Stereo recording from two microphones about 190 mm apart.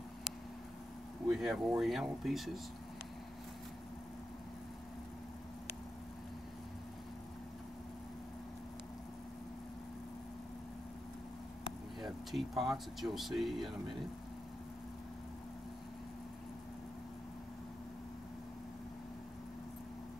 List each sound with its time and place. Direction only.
1.3 s speech: centre (ahead or behind)
11.6 s speech: centre (ahead or behind)